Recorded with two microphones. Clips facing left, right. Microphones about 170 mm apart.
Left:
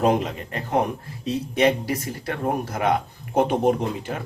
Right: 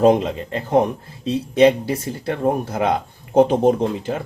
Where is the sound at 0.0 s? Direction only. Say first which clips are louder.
Right 6 dB; 25° right (ahead or behind).